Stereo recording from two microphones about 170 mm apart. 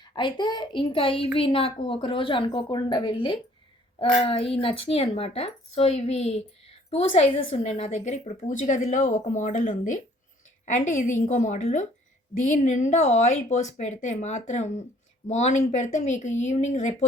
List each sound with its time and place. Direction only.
0.0 s a woman's voice: 25° left (ahead or behind); by 17.1 s 45° left (ahead or behind)